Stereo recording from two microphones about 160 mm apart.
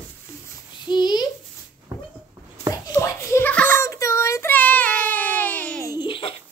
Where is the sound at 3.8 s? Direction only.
20° left (ahead or behind).